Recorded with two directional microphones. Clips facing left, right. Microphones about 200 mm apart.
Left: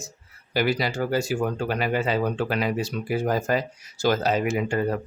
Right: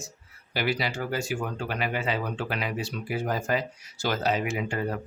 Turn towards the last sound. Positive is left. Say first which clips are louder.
# left 4 dB
turn(degrees=40)  # may be behind; listen again after turning